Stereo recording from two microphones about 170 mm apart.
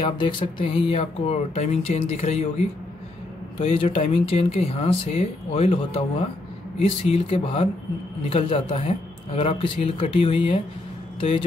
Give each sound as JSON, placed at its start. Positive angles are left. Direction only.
{"t": 0.0, "sound": "speech", "side_deg": 30}
{"t": 3.5, "sound": "speech", "side_deg": 35}